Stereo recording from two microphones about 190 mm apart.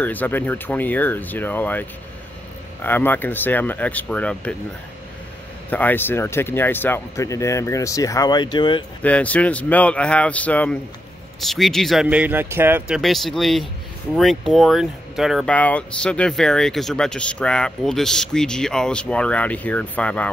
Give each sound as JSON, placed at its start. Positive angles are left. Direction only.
{"t": 0.0, "sound": "speech", "side_deg": 10}
{"t": 5.7, "sound": "speech", "side_deg": 10}
{"t": 9.0, "sound": "speech", "side_deg": 5}